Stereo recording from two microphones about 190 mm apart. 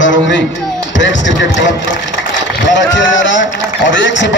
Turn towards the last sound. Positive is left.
turn(degrees=75)  # may be behind; listen again after turning